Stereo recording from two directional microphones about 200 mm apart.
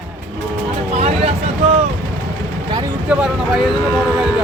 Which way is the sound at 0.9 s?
30° right (ahead or behind).